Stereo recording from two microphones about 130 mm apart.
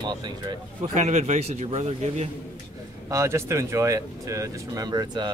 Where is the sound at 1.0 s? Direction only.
60° right (ahead or behind).